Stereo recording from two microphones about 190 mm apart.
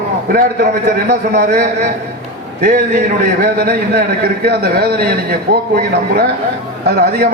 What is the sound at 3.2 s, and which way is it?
A man's voice, 55° right (ahead or behind).